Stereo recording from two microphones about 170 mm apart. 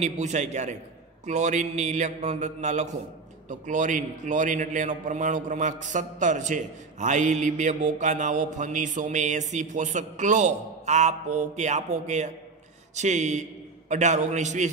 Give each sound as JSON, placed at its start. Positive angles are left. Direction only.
{"t": 0.0, "sound": "a man's voice", "side_deg": -45}